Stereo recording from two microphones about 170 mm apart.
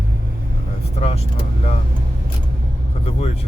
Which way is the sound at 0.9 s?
35° left (ahead or behind).